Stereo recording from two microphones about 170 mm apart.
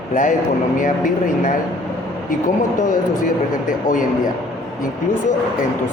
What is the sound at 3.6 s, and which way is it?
Speech, 50° left (ahead or behind).